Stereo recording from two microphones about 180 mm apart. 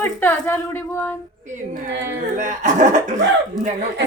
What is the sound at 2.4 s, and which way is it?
Speech, 45° right (ahead or behind).